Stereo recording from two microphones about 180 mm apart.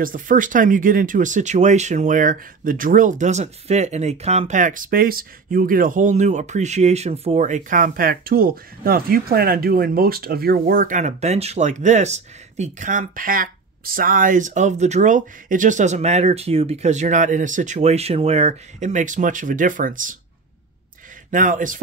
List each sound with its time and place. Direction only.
0.0 s speech: 50° right (ahead or behind)
21.3 s speech: 45° right (ahead or behind)